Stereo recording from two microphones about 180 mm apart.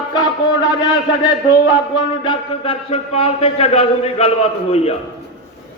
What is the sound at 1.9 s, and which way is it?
A man's voice, 25° left (ahead or behind).